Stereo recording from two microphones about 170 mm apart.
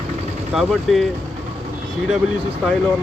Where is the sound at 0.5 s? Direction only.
Centre (ahead or behind).